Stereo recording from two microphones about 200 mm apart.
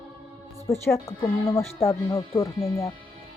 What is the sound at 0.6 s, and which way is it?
Speech, 15° left (ahead or behind).